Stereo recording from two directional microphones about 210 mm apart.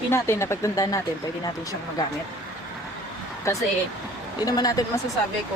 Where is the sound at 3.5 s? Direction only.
15° left (ahead or behind).